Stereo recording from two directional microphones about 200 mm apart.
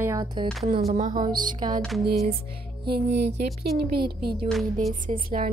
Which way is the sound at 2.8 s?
55° right (ahead or behind).